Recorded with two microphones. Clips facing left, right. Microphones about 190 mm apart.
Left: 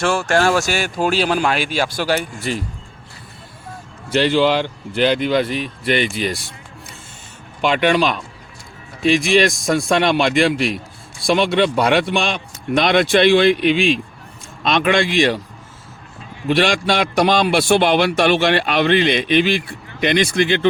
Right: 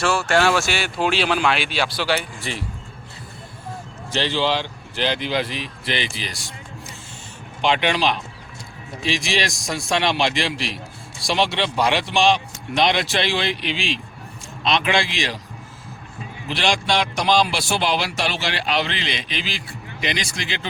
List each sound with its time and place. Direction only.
0.0 s speech: 45° left (ahead or behind)
4.1 s speech: 55° left (ahead or behind)
7.6 s a man's voice: 50° left (ahead or behind)
16.6 s a man's voice: 55° left (ahead or behind)